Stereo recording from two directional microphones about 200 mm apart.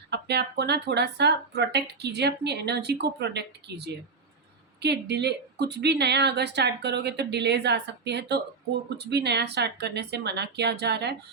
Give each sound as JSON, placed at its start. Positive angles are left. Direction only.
{"t": 0.1, "sound": "speech", "side_deg": -55}